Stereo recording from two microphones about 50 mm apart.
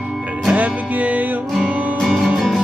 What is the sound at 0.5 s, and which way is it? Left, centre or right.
Music, right.